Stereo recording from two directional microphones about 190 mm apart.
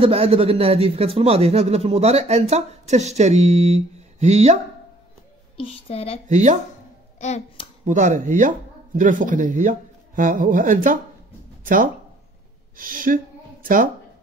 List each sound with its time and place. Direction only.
0.0 s speech: 30° right (ahead or behind)
5.6 s a woman's voice: 30° left (ahead or behind)
6.2 s speech: 40° right (ahead or behind)
7.2 s a woman's voice: 35° left (ahead or behind)
7.8 s a woman's voice: 40° right (ahead or behind)